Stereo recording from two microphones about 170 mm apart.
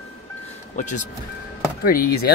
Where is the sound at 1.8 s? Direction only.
60° left (ahead or behind).